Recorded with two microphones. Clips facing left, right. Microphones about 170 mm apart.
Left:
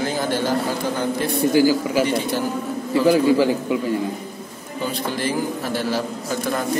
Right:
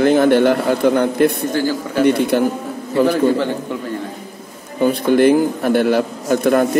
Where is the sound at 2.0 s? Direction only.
60° right (ahead or behind).